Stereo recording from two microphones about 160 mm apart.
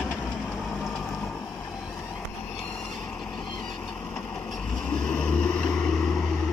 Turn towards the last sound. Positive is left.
turn(degrees=5)  # may be behind; listen again after turning